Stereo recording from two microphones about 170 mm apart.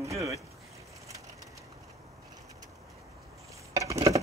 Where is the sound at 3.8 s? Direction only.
20° right (ahead or behind).